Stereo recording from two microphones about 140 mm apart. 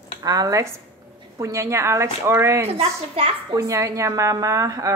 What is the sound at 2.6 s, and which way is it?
Speech, 45° right (ahead or behind).